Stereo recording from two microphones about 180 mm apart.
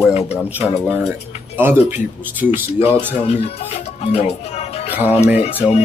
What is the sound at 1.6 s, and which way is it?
Speech, 10° right (ahead or behind).